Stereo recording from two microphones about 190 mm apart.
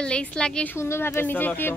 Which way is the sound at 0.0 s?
5° left (ahead or behind).